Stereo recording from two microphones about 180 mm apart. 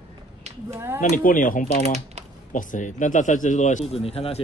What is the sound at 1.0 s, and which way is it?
Speech, 50° left (ahead or behind).